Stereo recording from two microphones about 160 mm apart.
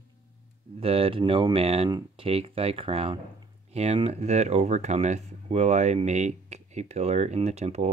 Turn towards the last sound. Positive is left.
turn(degrees=-45)  # may be behind; listen again after turning